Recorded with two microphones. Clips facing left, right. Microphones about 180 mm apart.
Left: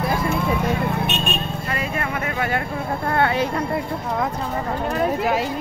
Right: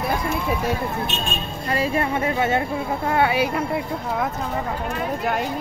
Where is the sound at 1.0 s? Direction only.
65° left (ahead or behind).